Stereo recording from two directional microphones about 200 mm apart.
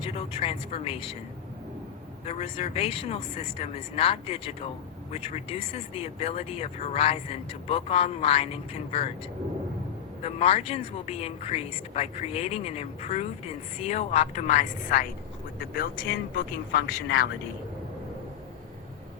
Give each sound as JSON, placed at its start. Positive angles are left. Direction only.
{"t": 0.0, "sound": "speech", "side_deg": 30}
{"t": 2.2, "sound": "speech", "side_deg": 30}
{"t": 10.2, "sound": "speech", "side_deg": 30}